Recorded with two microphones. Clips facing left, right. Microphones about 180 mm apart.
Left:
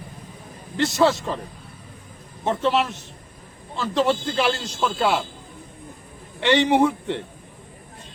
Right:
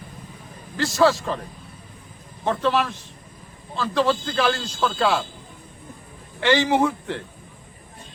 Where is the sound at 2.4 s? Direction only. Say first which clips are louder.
Even; 20° left (ahead or behind).